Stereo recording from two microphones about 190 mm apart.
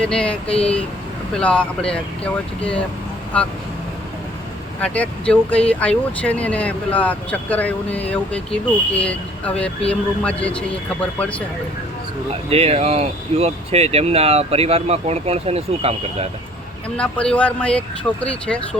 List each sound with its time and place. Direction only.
0.0 s speech: 5° left (ahead or behind)
4.8 s speech: 5° left (ahead or behind)
12.5 s speech: 30° right (ahead or behind)
17.0 s speech: 5° left (ahead or behind)